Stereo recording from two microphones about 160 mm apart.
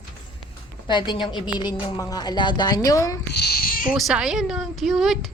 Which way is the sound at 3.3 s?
85° left.